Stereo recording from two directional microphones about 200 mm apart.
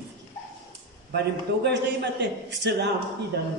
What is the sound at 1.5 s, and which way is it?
Speech, 60° right (ahead or behind).